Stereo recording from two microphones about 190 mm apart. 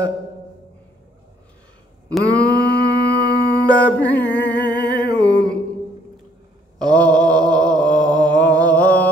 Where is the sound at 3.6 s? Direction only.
10° left (ahead or behind).